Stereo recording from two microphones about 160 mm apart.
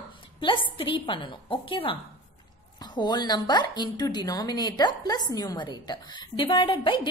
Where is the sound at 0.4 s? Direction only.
30° left (ahead or behind).